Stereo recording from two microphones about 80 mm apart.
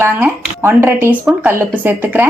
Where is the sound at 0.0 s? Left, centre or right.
Right.